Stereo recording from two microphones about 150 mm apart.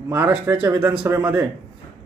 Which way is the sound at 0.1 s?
10° right (ahead or behind).